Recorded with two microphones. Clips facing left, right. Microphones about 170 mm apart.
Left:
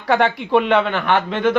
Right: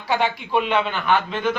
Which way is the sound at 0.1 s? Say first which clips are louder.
Left 5 dB; 70° left (ahead or behind).